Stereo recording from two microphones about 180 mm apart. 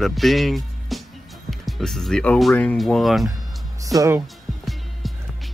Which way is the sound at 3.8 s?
20° right (ahead or behind).